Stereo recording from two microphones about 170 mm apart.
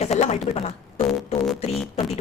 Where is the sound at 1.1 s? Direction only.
Centre (ahead or behind).